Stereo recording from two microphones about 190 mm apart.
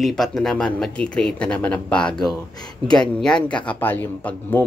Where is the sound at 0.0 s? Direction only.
Centre (ahead or behind).